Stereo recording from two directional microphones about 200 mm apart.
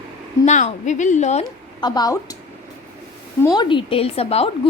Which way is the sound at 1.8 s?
20° left (ahead or behind).